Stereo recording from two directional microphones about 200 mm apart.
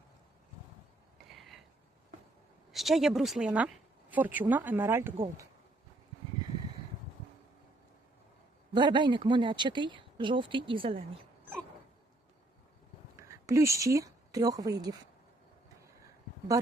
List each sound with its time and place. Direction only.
1.3 s a sound: centre (ahead or behind)
2.7 s a woman's voice: centre (ahead or behind)
8.7 s speech: 25° right (ahead or behind)
13.5 s a woman's voice: 15° right (ahead or behind)